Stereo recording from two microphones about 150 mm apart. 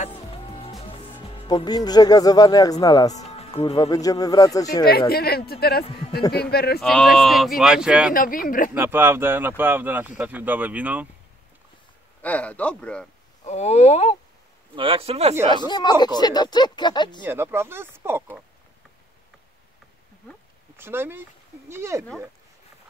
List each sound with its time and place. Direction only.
1.4 s speech: 30° left (ahead or behind)
3.2 s music: 45° left (ahead or behind)
3.9 s speech: 25° left (ahead or behind)
5.1 s speech: 90° left
6.8 s speech: 5° left (ahead or behind)
8.1 s speech: 70° left (ahead or behind)
8.7 s speech: 15° right (ahead or behind)
12.2 s speech: 10° left (ahead or behind)
13.4 s speech: 50° left (ahead or behind)
14.8 s speech: 40° right (ahead or behind)
15.5 s speech: 30° left (ahead or behind)
17.2 s speech: 15° right (ahead or behind)
20.7 s speech: 15° right (ahead or behind)